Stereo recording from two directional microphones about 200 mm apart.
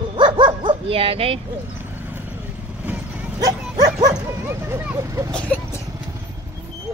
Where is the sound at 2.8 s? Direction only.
5° right (ahead or behind).